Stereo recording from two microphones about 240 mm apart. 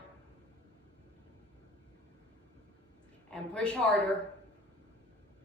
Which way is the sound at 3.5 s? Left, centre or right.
Centre.